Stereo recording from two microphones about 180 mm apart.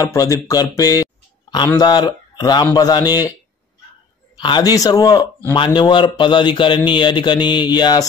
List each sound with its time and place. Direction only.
0.0 s a man's voice: 20° left (ahead or behind)
4.4 s a man's voice: 25° left (ahead or behind)